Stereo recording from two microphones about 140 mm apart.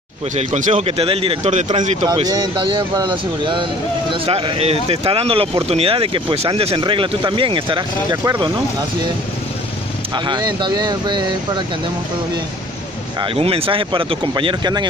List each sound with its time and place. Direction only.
0.4 s speech: 60° right (ahead or behind)
0.8 s speech: 45° right (ahead or behind)
1.5 s speech: 60° right (ahead or behind)
2.2 s speech: 35° right (ahead or behind)
10.1 s speech: 35° right (ahead or behind)
13.2 s speech: 40° right (ahead or behind)